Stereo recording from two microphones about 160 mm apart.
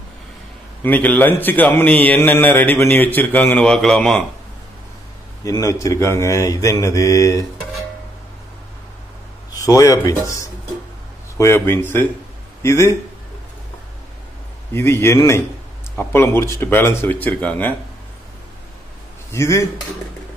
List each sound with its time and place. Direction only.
0.8 s a man's voice: 10° left (ahead or behind)
5.4 s mantra: 20° left (ahead or behind)
9.5 s mantra: 20° left (ahead or behind)
11.3 s a man's voice: 15° left (ahead or behind)
14.7 s a man's voice: 15° left (ahead or behind)
19.3 s mantra: 20° left (ahead or behind)